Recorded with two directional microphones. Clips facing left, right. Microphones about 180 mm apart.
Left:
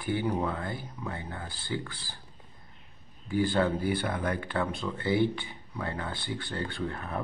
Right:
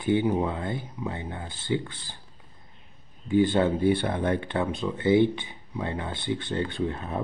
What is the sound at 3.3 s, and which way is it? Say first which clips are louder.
Speech: right 5 dB; 20° right (ahead or behind).